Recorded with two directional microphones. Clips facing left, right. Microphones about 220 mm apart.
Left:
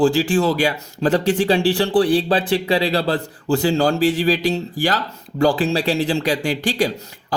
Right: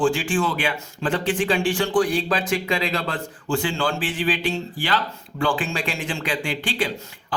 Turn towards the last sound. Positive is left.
turn(degrees=40)  # may be behind; listen again after turning